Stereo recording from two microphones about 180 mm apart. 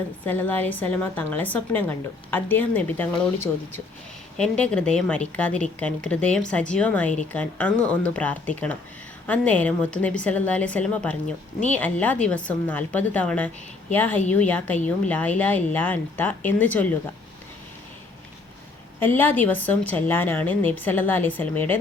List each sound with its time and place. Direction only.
0.3 s a woman's voice: 10° left (ahead or behind)
18.9 s a woman's voice: 10° left (ahead or behind)